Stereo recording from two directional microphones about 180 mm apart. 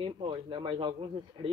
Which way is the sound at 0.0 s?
30° right (ahead or behind).